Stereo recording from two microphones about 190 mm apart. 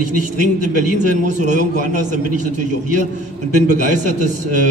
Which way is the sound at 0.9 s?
40° right (ahead or behind).